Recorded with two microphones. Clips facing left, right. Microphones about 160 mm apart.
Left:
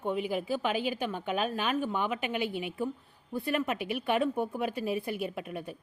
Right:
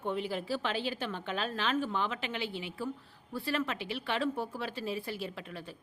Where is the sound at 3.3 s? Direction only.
20° left (ahead or behind).